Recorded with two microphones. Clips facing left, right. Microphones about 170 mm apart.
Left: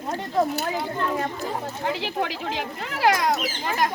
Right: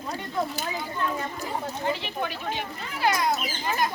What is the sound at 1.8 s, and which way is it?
Speech, 90° left.